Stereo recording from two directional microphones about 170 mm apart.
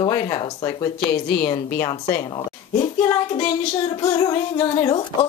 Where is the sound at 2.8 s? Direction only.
25° left (ahead or behind).